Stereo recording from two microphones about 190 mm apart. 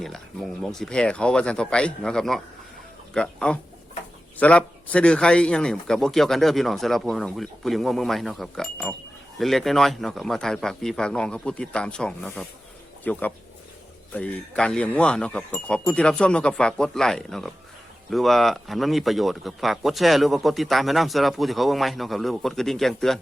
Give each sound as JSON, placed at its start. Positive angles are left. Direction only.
{"t": 0.6, "sound": "a man's voice", "side_deg": 0}